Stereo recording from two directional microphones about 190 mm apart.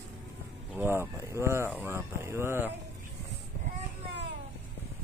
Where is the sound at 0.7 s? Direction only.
10° right (ahead or behind).